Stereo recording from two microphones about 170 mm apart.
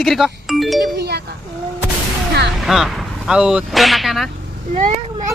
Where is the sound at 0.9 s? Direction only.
75° right (ahead or behind).